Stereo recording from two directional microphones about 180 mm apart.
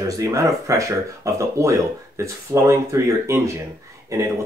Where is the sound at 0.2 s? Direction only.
20° right (ahead or behind).